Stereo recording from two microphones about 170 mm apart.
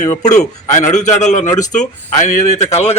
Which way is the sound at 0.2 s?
45° left (ahead or behind).